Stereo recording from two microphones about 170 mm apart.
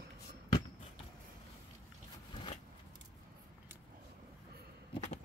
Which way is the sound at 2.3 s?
30° left (ahead or behind).